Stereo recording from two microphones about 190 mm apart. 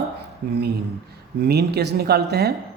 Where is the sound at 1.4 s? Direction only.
60° right (ahead or behind).